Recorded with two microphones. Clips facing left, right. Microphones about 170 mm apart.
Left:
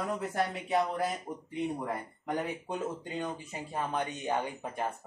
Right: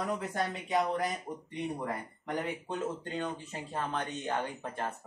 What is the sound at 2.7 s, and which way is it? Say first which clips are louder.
Speech: even; 10° left (ahead or behind).